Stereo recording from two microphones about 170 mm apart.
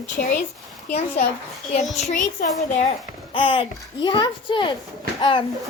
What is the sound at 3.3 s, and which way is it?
A child's voice, 30° left (ahead or behind).